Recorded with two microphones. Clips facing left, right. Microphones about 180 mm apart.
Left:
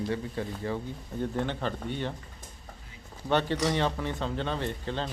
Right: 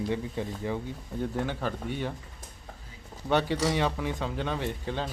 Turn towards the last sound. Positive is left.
turn(degrees=-10)  # may be behind; listen again after turning